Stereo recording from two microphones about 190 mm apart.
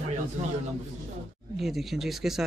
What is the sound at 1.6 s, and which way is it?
Speech, centre (ahead or behind).